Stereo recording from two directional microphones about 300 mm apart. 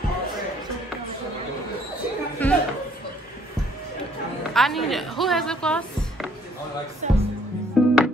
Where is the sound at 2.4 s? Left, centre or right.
Centre.